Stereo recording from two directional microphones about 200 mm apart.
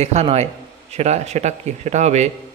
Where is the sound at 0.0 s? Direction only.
35° right (ahead or behind).